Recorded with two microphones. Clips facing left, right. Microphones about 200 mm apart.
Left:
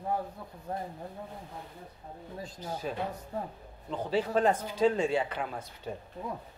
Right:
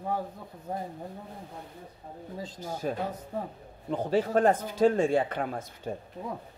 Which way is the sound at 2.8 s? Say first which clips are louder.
Right 4 dB; 50° right (ahead or behind).